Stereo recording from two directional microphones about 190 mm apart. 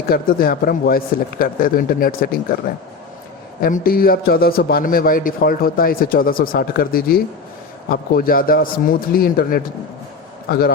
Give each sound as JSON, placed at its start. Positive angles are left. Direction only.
{"t": 0.1, "sound": "a man's voice", "side_deg": 50}
{"t": 3.6, "sound": "a man's voice", "side_deg": 50}